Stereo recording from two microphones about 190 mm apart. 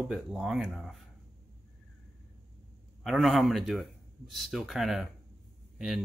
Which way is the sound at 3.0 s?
Centre (ahead or behind).